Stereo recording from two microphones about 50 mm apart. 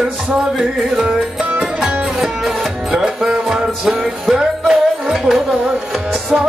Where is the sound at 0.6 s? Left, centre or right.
Centre.